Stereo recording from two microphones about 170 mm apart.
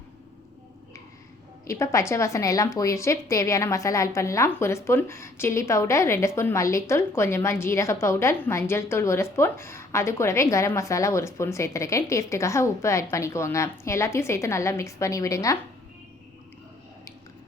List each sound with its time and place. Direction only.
1.6 s a woman's voice: 15° left (ahead or behind)